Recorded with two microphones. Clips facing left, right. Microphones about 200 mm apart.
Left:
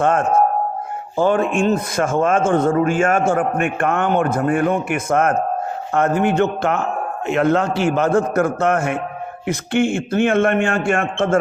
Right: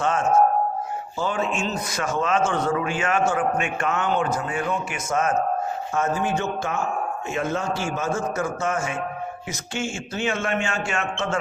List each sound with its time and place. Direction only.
0.0 s music: 55° left (ahead or behind)
1.1 s a man's voice: 55° left (ahead or behind)